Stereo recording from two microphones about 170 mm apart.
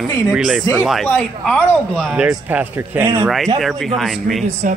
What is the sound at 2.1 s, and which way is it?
A man's voice, 5° right (ahead or behind).